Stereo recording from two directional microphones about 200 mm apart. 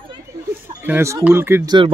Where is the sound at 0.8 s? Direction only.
10° right (ahead or behind).